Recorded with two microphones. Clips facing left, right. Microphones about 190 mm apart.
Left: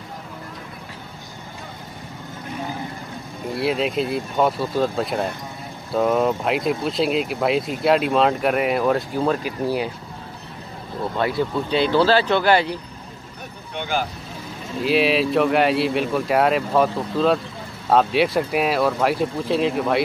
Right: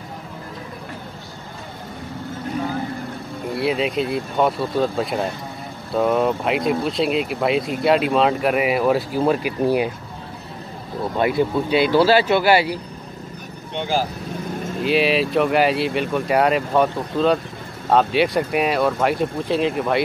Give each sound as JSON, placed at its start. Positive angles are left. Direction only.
{"t": 3.5, "sound": "speech", "side_deg": 0}
{"t": 11.1, "sound": "speech", "side_deg": -15}
{"t": 13.7, "sound": "speech", "side_deg": -30}
{"t": 14.8, "sound": "speech", "side_deg": 0}